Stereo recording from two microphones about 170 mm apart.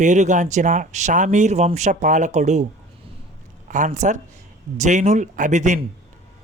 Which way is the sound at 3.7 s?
45° right (ahead or behind).